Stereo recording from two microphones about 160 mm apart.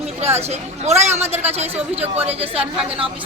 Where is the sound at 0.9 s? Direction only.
45° right (ahead or behind).